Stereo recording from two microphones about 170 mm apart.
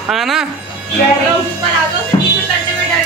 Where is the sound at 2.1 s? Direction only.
20° left (ahead or behind).